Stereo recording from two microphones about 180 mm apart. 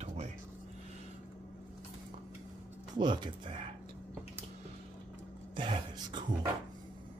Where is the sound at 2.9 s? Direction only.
25° right (ahead or behind).